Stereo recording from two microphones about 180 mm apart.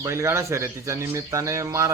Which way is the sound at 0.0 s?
15° right (ahead or behind).